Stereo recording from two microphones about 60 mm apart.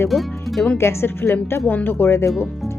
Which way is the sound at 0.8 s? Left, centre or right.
Left.